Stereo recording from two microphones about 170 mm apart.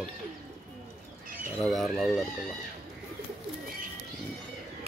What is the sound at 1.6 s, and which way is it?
Speech, centre (ahead or behind).